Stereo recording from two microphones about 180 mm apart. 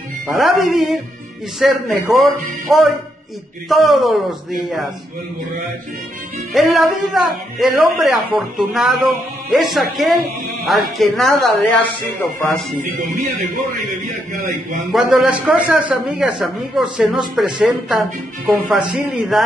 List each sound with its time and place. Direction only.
0.4 s a man's voice: centre (ahead or behind)
6.5 s a man's voice: centre (ahead or behind)
13.1 s speech: 45° right (ahead or behind)
14.9 s a man's voice: centre (ahead or behind)